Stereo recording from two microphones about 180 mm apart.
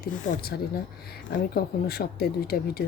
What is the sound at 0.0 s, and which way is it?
Speech, 60° left (ahead or behind).